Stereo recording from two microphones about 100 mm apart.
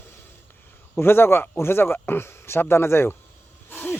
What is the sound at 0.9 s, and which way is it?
Speech, 20° left (ahead or behind).